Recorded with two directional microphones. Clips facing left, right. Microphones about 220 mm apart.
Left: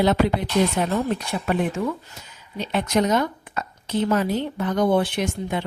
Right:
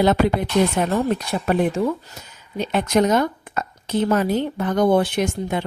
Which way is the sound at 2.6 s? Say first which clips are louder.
Right 3 dB; 50° right (ahead or behind).